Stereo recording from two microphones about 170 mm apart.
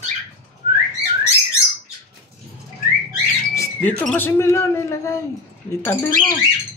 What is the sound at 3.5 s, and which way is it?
Speech, 15° left (ahead or behind).